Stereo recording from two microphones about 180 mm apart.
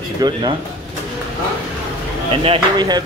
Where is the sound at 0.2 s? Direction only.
20° right (ahead or behind).